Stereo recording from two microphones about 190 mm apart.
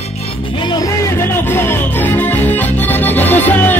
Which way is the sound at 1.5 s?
10° left (ahead or behind).